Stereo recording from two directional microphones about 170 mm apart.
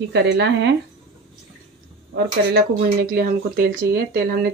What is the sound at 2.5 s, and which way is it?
Speech, 60° right (ahead or behind).